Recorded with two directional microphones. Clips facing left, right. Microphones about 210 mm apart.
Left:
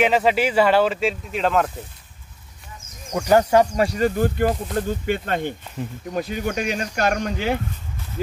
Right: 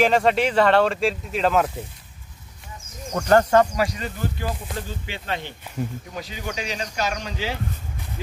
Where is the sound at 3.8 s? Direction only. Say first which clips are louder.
Left 10 dB; 50° left (ahead or behind).